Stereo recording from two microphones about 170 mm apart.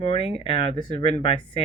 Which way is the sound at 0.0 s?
35° left (ahead or behind).